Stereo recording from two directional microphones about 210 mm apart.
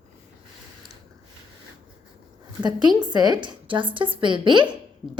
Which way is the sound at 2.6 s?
20° right (ahead or behind).